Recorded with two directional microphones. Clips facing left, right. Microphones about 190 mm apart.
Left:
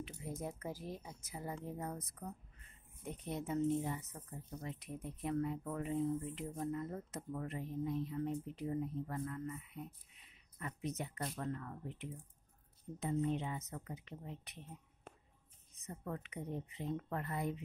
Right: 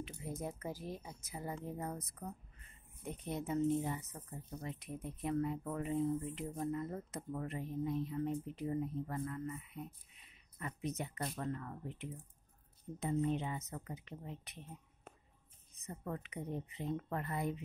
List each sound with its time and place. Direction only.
0.0 s speech: 5° right (ahead or behind)
3.1 s speech: 5° right (ahead or behind)
10.6 s speech: 5° right (ahead or behind)
13.0 s a woman's voice: 15° right (ahead or behind)
15.9 s speech: 15° right (ahead or behind)